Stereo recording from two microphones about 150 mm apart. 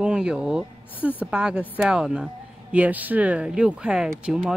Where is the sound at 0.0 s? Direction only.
5° right (ahead or behind).